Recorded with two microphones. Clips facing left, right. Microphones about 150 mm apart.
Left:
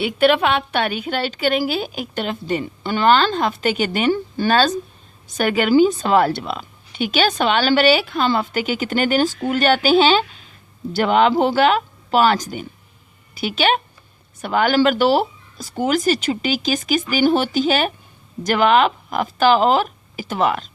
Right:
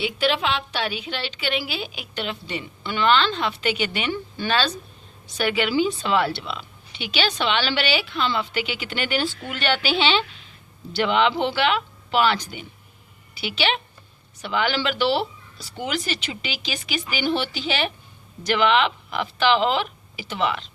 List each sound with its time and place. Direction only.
0.0 s a woman's voice: 55° left (ahead or behind)